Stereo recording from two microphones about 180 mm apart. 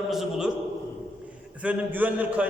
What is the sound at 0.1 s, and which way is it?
Speech, 5° right (ahead or behind).